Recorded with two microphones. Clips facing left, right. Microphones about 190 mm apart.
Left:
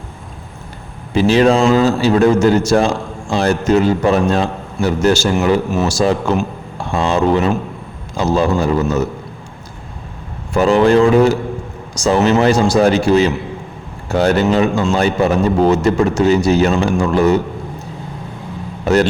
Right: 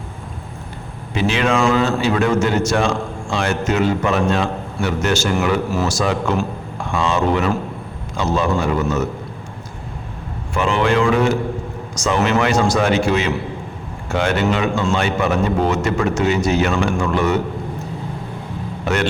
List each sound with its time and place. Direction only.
1.1 s a man's voice: 35° left (ahead or behind)
10.5 s a man's voice: 40° left (ahead or behind)